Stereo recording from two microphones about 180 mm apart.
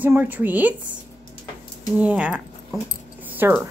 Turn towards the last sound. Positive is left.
turn(degrees=-10)  # may be behind; listen again after turning